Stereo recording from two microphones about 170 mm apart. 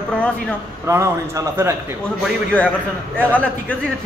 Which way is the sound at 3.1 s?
5° left (ahead or behind).